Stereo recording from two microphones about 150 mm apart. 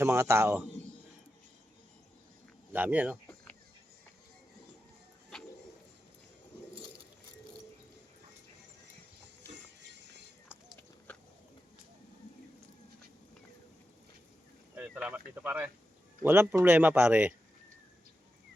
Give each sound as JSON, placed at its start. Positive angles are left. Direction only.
{"t": 0.0, "sound": "speech", "side_deg": -20}
{"t": 2.7, "sound": "speech", "side_deg": -10}
{"t": 14.8, "sound": "speech", "side_deg": -10}